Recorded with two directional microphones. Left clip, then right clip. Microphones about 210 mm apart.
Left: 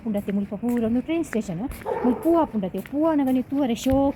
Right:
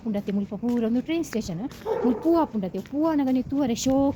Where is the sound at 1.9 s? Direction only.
40° left (ahead or behind).